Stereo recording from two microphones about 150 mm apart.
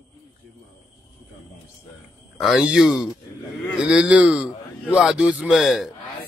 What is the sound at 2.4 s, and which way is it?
Speech, 5° right (ahead or behind).